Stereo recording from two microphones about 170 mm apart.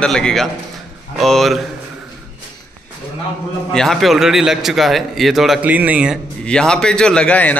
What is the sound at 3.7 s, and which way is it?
A man's voice, centre (ahead or behind).